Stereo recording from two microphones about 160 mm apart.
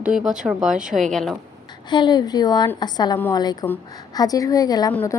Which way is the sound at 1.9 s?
30° left (ahead or behind).